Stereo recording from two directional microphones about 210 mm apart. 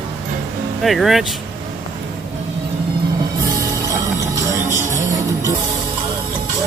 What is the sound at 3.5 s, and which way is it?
Music, 15° right (ahead or behind).